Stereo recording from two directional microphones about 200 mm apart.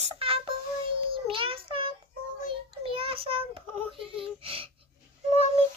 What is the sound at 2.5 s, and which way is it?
A child's voice, 25° right (ahead or behind).